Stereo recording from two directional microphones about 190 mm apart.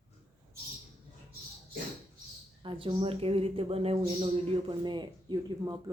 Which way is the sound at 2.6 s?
30° right (ahead or behind).